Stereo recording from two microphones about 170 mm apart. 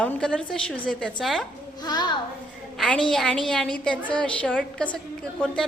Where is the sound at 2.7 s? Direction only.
5° left (ahead or behind).